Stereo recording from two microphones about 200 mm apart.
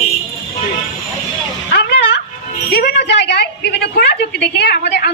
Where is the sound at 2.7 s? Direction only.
60° left (ahead or behind).